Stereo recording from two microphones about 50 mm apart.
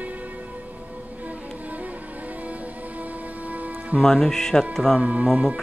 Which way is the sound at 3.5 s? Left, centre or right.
Right.